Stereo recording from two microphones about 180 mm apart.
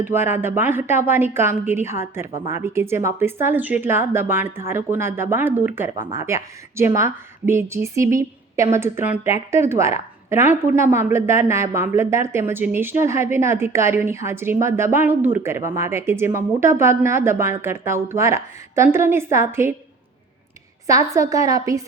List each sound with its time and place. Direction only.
0.0 s a woman's voice: 10° right (ahead or behind)
20.8 s a woman's voice: 20° right (ahead or behind)